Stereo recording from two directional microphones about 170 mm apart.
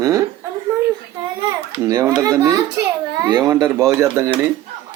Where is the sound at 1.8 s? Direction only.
20° right (ahead or behind).